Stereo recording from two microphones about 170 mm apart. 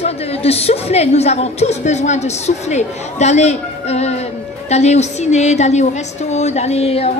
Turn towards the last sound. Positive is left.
turn(degrees=35)  # may be behind; listen again after turning